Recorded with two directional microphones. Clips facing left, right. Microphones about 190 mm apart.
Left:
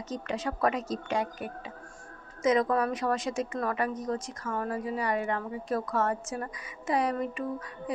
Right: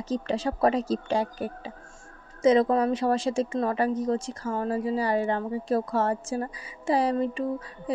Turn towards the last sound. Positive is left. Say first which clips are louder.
# right 4 dB
turn(degrees=-30)  # may be behind; listen again after turning